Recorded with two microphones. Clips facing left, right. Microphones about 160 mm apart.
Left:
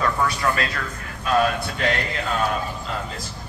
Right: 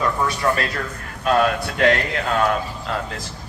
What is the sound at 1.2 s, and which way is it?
A man's voice, 55° right (ahead or behind).